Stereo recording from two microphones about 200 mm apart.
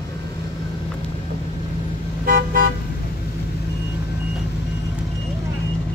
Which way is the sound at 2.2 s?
45° right (ahead or behind).